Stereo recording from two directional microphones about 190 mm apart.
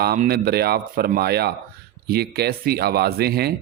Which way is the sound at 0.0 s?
55° right (ahead or behind).